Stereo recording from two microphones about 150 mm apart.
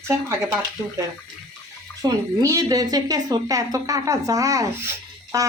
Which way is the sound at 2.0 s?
20° right (ahead or behind).